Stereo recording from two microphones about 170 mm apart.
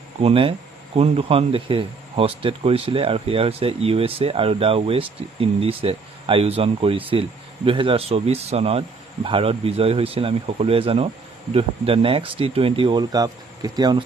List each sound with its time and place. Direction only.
0.2 s speech: 35° right (ahead or behind)